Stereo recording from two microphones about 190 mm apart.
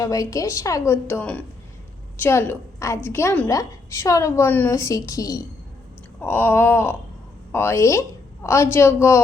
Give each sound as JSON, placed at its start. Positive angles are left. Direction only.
{"t": 0.0, "sound": "a woman's voice", "side_deg": 15}